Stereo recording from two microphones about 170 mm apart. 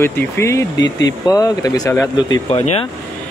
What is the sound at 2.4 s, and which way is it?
Speech, 35° left (ahead or behind).